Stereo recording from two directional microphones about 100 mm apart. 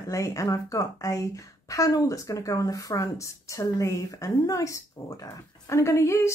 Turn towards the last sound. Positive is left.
turn(degrees=30)  # may be behind; listen again after turning